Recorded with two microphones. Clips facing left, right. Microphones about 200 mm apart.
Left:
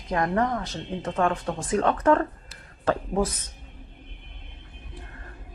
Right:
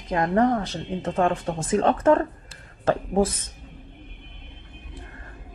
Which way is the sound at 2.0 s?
25° right (ahead or behind).